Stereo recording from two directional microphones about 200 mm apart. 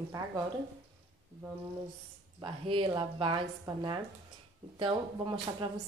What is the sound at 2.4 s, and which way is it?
Speech, 25° right (ahead or behind).